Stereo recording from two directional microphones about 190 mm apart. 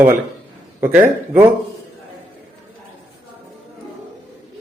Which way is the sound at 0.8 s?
10° right (ahead or behind).